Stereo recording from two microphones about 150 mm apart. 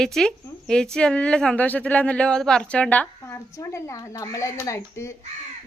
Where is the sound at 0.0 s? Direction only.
5° left (ahead or behind).